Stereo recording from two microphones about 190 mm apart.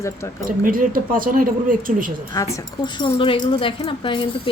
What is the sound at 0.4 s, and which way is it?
Speech, 45° right (ahead or behind).